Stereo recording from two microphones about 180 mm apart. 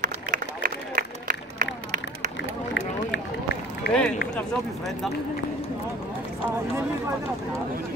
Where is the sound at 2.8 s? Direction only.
90° left.